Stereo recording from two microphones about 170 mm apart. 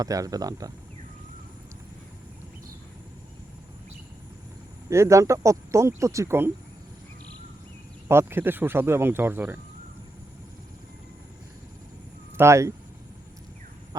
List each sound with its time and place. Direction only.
0.0 s speech: 20° right (ahead or behind)
4.9 s speech: 15° right (ahead or behind)
8.0 s speech: 15° right (ahead or behind)
12.4 s speech: 15° right (ahead or behind)